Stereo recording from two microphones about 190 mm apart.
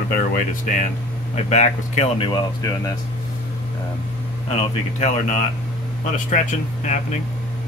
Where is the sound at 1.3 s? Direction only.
40° left (ahead or behind); by 2.9 s 20° left (ahead or behind).